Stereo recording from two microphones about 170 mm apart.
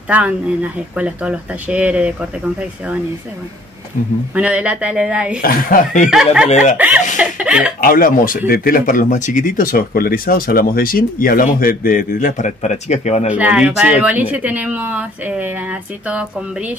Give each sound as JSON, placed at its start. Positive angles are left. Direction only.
{"t": 0.1, "sound": "speech", "side_deg": -10}
{"t": 4.3, "sound": "speech", "side_deg": -5}
{"t": 5.4, "sound": "speech", "side_deg": 55}
{"t": 6.8, "sound": "chuckle", "side_deg": -10}
{"t": 7.8, "sound": "speech", "side_deg": 55}
{"t": 13.3, "sound": "speech", "side_deg": -10}